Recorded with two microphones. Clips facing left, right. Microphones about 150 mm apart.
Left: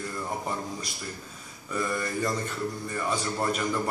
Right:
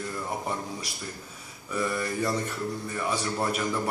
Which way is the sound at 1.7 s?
5° right (ahead or behind).